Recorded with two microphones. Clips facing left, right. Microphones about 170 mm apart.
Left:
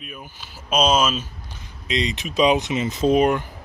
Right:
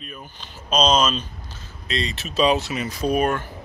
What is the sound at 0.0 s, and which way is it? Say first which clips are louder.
Speech: even; 10° left (ahead or behind).